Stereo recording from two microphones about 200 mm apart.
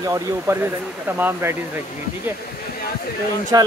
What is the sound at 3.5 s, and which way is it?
Speech, 20° right (ahead or behind).